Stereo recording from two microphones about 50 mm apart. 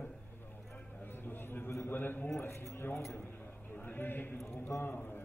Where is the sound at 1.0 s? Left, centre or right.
Left.